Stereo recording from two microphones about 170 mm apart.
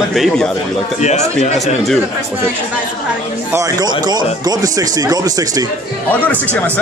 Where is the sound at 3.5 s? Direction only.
20° right (ahead or behind).